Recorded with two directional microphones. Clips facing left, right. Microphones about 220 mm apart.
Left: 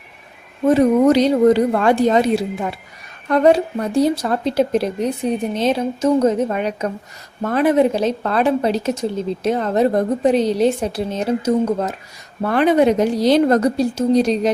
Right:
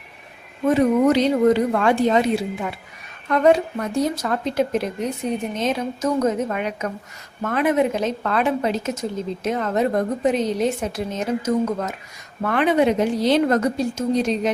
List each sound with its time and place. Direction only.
0.7 s a woman's voice: 35° left (ahead or behind)